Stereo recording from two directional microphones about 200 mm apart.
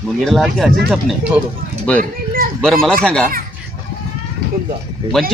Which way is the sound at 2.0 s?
45° right (ahead or behind).